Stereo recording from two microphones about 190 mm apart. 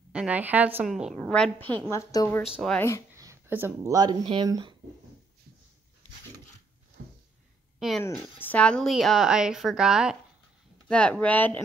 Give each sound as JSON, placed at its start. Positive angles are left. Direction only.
{"t": 0.1, "sound": "a woman's voice", "side_deg": -5}
{"t": 2.4, "sound": "a woman's voice", "side_deg": 0}
{"t": 3.2, "sound": "speech", "side_deg": -15}
{"t": 7.0, "sound": "a sound", "side_deg": -55}
{"t": 8.0, "sound": "a woman's voice", "side_deg": 10}